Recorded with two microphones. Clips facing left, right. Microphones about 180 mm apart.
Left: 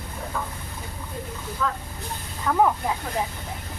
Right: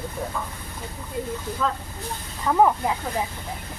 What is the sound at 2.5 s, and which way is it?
Speech, 15° right (ahead or behind).